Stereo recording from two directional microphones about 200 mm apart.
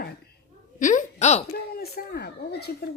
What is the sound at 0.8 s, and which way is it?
Speech, 35° left (ahead or behind).